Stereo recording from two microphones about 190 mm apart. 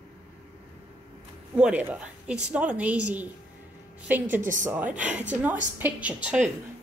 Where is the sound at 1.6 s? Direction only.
5° right (ahead or behind).